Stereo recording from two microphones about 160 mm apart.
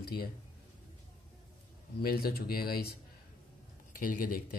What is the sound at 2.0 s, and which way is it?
Speech, 70° left (ahead or behind).